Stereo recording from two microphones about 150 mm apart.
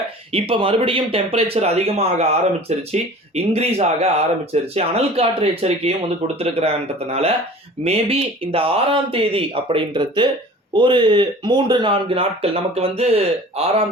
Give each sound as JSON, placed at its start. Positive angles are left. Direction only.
{"t": 0.3, "sound": "speech", "side_deg": -40}